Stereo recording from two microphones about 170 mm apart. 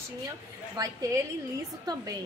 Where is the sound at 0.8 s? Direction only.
20° right (ahead or behind).